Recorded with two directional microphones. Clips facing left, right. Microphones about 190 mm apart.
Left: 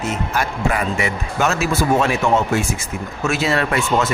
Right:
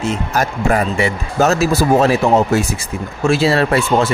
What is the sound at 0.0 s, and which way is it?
Speech, 35° right (ahead or behind).